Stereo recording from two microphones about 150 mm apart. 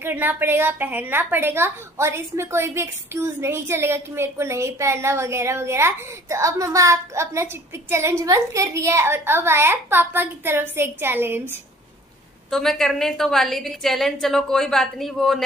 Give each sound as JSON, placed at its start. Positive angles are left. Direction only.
{"t": 0.0, "sound": "a woman's voice", "side_deg": -15}
{"t": 12.4, "sound": "a woman's voice", "side_deg": 0}